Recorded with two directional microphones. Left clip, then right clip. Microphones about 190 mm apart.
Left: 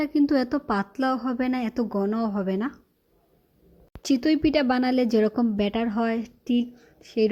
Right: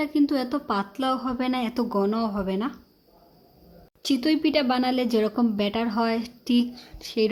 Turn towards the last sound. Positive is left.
turn(degrees=10)  # may be behind; listen again after turning